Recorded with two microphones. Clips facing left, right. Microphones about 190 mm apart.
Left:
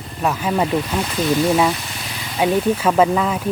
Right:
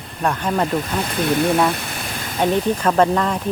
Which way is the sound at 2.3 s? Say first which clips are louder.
Left 1 dB; 5° left (ahead or behind).